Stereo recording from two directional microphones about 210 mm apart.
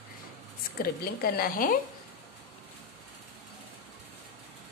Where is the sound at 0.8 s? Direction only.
45° left (ahead or behind).